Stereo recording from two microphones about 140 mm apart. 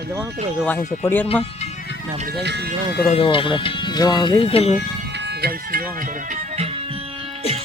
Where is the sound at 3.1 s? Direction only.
40° left (ahead or behind).